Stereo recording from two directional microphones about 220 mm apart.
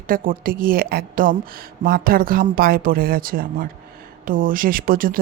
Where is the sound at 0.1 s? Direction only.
40° right (ahead or behind).